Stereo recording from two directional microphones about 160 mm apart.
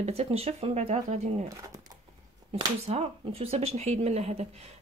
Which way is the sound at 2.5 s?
40° right (ahead or behind).